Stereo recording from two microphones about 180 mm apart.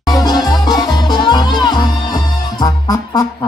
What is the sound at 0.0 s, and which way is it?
Music, 20° left (ahead or behind).